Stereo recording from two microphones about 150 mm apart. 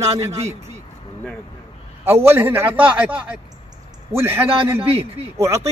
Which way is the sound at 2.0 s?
15° right (ahead or behind).